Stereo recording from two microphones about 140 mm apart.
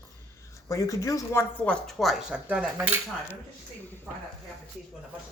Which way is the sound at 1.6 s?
5° left (ahead or behind).